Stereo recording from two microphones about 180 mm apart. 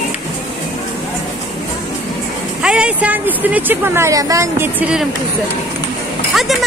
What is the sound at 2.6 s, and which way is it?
Speech, 5° right (ahead or behind).